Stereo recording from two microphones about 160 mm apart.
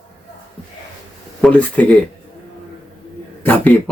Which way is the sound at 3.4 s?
10° left (ahead or behind).